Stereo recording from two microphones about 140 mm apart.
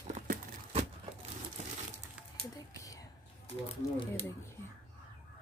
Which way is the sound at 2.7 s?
25° left (ahead or behind).